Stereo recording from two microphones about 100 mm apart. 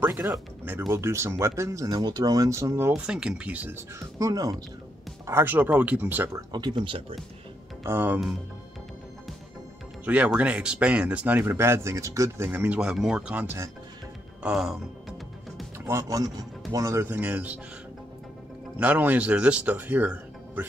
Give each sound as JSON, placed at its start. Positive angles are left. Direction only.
{"t": 0.2, "sound": "speech", "side_deg": -20}
{"t": 2.9, "sound": "speech", "side_deg": -10}
{"t": 4.2, "sound": "speech", "side_deg": -35}
{"t": 5.2, "sound": "speech", "side_deg": -20}
{"t": 6.5, "sound": "speech", "side_deg": -45}
{"t": 7.8, "sound": "speech", "side_deg": -20}
{"t": 10.0, "sound": "speech", "side_deg": -15}
{"t": 13.3, "sound": "speech", "side_deg": -15}
{"t": 14.4, "sound": "music", "side_deg": -5}
{"t": 15.9, "sound": "speech", "side_deg": -35}
{"t": 18.8, "sound": "speech", "side_deg": -15}